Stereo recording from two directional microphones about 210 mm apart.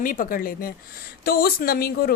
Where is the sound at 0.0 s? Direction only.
40° left (ahead or behind).